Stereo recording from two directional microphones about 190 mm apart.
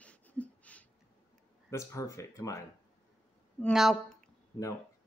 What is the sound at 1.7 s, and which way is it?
Speech, 15° left (ahead or behind).